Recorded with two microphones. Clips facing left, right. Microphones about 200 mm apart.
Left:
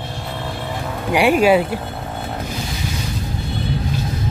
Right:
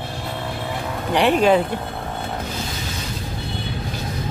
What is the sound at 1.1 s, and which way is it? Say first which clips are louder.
Speech: left 2 dB; 10° left (ahead or behind).